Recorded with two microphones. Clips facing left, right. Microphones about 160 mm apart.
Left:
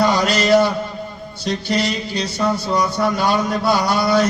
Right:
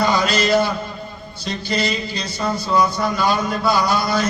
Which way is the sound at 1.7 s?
70° left (ahead or behind).